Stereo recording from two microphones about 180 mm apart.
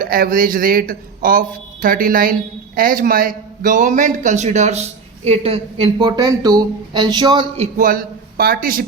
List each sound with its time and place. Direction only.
0.0 s a man's voice: 55° right (ahead or behind); by 7.4 s 25° right (ahead or behind)
7.5 s a man's voice: 40° right (ahead or behind)